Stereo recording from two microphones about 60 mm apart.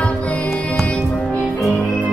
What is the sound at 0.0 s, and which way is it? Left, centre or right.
Music, left.